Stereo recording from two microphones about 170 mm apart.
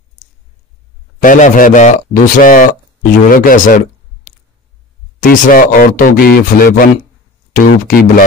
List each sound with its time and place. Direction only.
1.2 s a man's voice: 50° left (ahead or behind)